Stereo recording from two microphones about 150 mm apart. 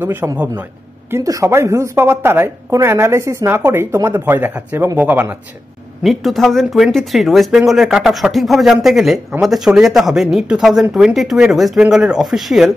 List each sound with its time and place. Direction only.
0.0 s a woman's voice: 10° right (ahead or behind)
6.0 s speech: centre (ahead or behind)